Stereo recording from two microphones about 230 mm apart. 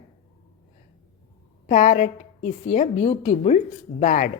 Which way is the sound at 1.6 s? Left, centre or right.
Left.